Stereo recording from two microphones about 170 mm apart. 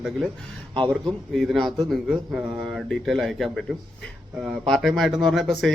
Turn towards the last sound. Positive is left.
turn(degrees=0)  # may be behind; listen again after turning